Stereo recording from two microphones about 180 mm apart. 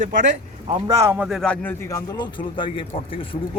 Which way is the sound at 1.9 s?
20° left (ahead or behind).